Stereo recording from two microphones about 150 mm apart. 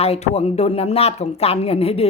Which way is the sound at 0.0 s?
45° left (ahead or behind).